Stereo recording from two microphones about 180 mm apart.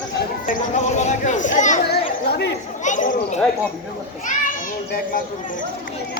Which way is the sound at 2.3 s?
65° left (ahead or behind).